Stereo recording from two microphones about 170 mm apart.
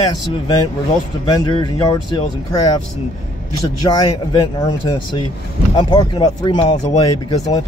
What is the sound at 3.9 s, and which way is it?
Speech, 25° left (ahead or behind).